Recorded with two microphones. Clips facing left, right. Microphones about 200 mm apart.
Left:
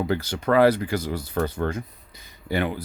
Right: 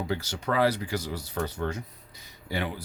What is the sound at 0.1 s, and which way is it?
Speech, 55° left (ahead or behind).